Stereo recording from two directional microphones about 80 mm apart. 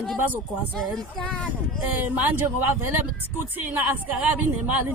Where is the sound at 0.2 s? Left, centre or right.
Right.